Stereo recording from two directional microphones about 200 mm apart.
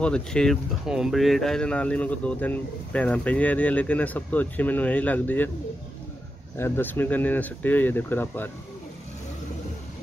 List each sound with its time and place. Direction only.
0.0 s speech: 5° left (ahead or behind)
6.5 s speech: 10° left (ahead or behind)